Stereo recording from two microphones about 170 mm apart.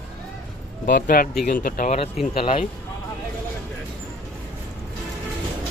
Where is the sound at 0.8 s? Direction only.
60° left (ahead or behind).